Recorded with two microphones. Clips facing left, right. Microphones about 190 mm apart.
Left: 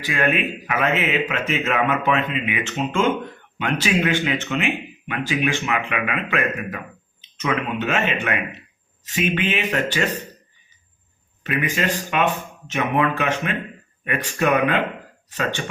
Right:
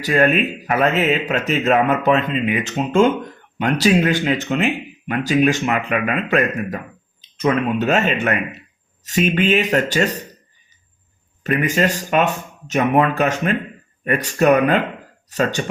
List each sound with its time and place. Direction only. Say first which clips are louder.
0.0 s speech: right 6 dB; 40° right (ahead or behind)
11.6 s speech: right 4 dB; 40° right (ahead or behind)